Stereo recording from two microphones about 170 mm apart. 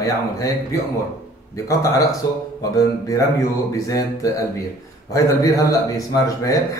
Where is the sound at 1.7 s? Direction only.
20° left (ahead or behind).